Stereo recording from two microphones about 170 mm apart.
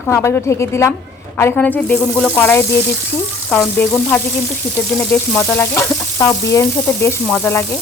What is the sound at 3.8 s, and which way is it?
Speech, 10° left (ahead or behind).